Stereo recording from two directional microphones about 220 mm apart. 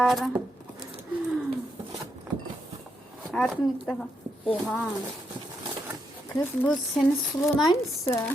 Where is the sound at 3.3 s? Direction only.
Centre (ahead or behind).